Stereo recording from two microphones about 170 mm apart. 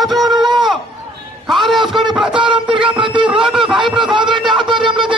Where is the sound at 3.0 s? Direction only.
30° right (ahead or behind).